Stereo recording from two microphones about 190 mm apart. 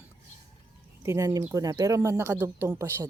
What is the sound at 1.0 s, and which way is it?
Speech, 15° right (ahead or behind).